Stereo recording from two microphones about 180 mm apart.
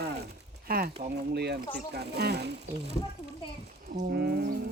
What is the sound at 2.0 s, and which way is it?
Speech, 65° right (ahead or behind).